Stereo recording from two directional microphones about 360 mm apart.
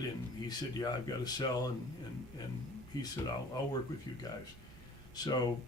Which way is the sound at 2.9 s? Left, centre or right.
Centre.